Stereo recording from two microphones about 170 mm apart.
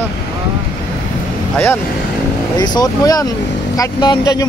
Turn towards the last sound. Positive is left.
turn(degrees=20)  # may be behind; listen again after turning